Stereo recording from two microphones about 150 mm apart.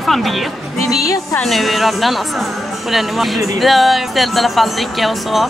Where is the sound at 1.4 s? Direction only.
Centre (ahead or behind).